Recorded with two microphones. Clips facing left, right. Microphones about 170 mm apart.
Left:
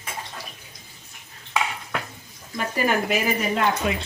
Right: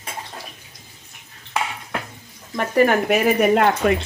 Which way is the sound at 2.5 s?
65° right (ahead or behind).